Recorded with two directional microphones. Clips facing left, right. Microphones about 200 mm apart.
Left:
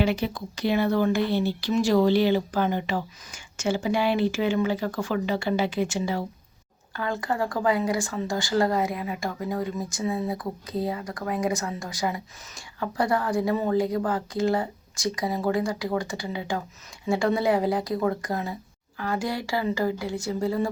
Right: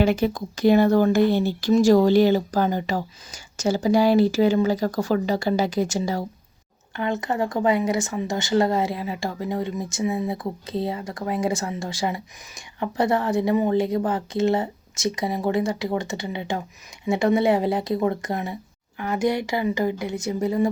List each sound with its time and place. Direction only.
0.0 s speech: 45° right (ahead or behind)
6.9 s speech: 20° right (ahead or behind)